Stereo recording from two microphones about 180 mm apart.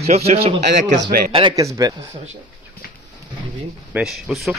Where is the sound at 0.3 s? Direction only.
35° right (ahead or behind).